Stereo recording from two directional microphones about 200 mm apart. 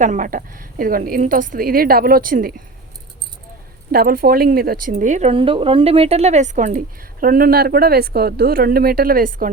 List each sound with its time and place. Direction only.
0.0 s speech: 40° right (ahead or behind)
3.9 s speech: 45° right (ahead or behind)